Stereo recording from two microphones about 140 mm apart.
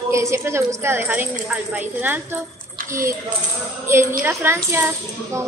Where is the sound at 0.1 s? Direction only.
20° right (ahead or behind).